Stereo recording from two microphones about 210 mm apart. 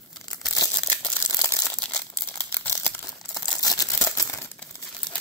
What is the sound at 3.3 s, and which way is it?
Crumpling, 20° left (ahead or behind).